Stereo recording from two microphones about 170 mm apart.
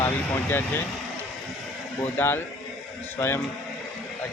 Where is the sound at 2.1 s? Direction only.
15° left (ahead or behind).